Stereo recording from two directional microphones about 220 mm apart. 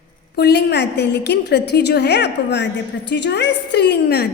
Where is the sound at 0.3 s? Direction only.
50° left (ahead or behind).